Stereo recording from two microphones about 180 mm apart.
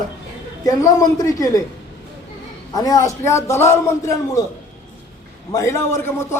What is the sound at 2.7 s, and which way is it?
A man's voice, 20° left (ahead or behind).